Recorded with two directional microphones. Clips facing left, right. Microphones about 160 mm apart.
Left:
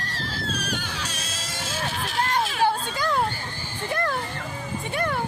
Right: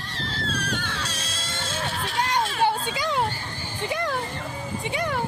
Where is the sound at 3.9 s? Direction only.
15° right (ahead or behind).